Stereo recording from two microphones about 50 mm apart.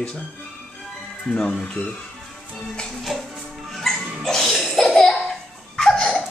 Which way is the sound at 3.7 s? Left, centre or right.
Centre.